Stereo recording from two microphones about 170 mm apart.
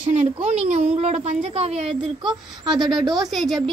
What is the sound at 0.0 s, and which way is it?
A child's voice, 40° right (ahead or behind).